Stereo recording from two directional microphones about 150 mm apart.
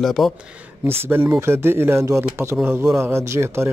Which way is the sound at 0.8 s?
15° right (ahead or behind).